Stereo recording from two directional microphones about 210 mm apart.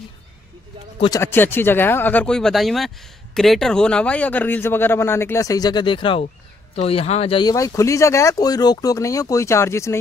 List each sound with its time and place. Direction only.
0.9 s speech: 25° left (ahead or behind)
1.2 s speech: 10° left (ahead or behind)